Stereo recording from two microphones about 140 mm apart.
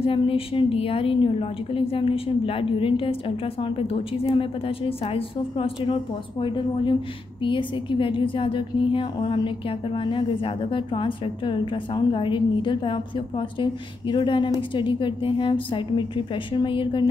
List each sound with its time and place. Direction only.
0.0 s a woman's voice: 40° left (ahead or behind)